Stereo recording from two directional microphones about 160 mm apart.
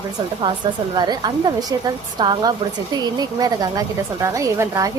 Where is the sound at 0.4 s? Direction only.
25° right (ahead or behind).